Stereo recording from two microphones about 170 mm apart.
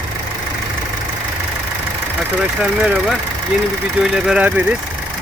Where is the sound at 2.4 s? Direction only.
5° right (ahead or behind).